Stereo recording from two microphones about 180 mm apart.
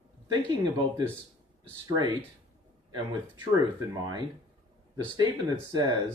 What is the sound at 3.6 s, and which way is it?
Speech, 25° right (ahead or behind).